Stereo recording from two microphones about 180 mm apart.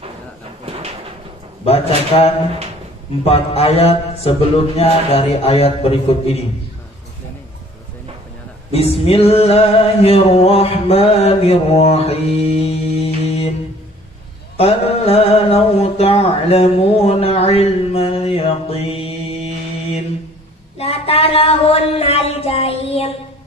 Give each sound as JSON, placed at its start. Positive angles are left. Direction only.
{"t": 2.1, "sound": "music", "side_deg": 30}
{"t": 8.7, "sound": "music", "side_deg": 35}
{"t": 14.6, "sound": "music", "side_deg": 35}